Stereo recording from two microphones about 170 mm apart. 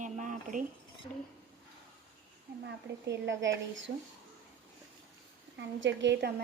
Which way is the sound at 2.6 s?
90° right.